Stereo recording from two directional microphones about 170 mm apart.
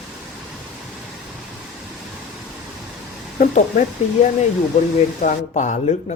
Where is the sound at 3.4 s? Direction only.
50° left (ahead or behind).